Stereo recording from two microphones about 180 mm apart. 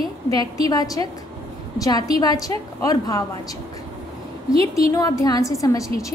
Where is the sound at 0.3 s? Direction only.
20° left (ahead or behind).